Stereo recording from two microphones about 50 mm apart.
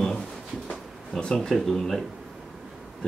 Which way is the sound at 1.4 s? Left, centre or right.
Centre.